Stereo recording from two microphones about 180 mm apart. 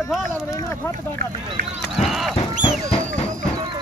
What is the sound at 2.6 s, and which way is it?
Music, 30° left (ahead or behind).